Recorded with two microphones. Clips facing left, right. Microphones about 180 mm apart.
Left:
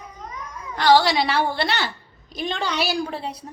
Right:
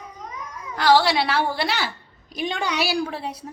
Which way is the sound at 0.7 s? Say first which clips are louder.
Left 1 dB; centre (ahead or behind).